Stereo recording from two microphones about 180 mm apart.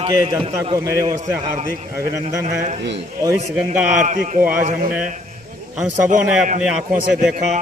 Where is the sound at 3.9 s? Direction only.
45° right (ahead or behind).